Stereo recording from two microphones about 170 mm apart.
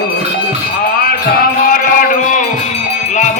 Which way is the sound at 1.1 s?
60° left (ahead or behind).